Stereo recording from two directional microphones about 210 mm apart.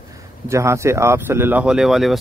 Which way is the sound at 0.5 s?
15° right (ahead or behind).